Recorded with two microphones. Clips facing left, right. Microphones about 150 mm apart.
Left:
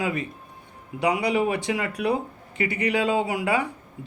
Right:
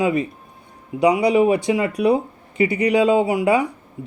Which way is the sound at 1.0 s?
35° right (ahead or behind).